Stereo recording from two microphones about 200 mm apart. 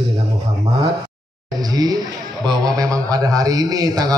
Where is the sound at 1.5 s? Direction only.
20° right (ahead or behind).